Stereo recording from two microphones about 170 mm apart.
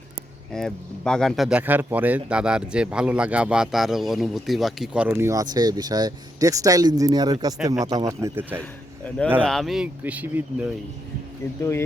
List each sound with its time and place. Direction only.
0.5 s speech: 5° left (ahead or behind); by 8.5 s 15° right (ahead or behind)
9.0 s speech: 5° left (ahead or behind); by 10.7 s 10° right (ahead or behind)